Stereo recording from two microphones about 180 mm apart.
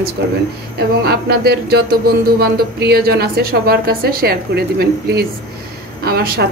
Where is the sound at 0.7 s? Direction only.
60° right (ahead or behind).